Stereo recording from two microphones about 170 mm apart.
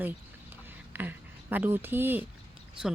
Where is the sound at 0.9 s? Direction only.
10° right (ahead or behind).